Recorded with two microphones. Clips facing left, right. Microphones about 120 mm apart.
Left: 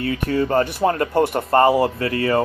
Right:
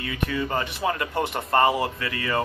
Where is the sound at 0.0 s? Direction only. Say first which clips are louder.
Left 7 dB; 40° left (ahead or behind).